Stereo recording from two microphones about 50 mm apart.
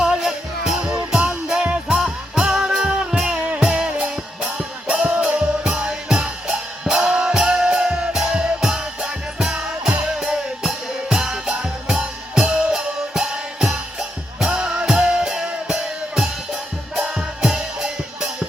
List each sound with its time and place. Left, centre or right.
0.0 s music: centre
1.1 s music: centre